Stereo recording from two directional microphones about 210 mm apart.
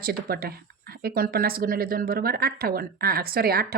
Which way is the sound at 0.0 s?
45° right (ahead or behind).